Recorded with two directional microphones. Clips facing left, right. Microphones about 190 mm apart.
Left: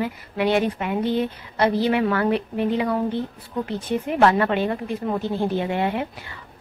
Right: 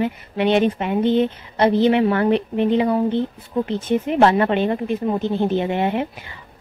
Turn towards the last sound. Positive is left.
turn(degrees=-20)  # may be behind; listen again after turning